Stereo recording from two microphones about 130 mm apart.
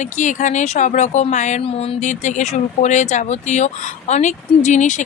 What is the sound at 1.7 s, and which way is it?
Speech, 50° left (ahead or behind).